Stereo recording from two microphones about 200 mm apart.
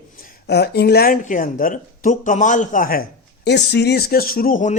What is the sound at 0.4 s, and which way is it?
Speech, 55° left (ahead or behind).